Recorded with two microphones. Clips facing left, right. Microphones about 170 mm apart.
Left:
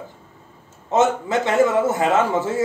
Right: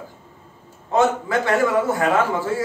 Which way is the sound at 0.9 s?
20° left (ahead or behind).